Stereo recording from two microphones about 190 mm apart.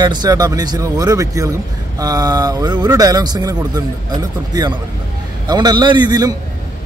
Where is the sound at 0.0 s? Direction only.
20° right (ahead or behind).